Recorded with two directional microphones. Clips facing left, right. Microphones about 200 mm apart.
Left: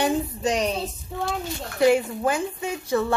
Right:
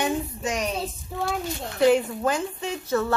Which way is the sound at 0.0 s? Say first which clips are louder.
Left 3 dB; 35° left (ahead or behind).